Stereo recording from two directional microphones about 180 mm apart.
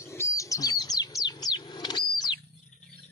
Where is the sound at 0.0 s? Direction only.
15° left (ahead or behind).